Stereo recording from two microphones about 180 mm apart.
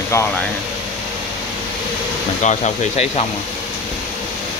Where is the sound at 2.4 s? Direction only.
40° left (ahead or behind).